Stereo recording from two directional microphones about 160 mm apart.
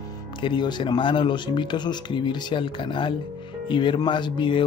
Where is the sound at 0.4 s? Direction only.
30° left (ahead or behind).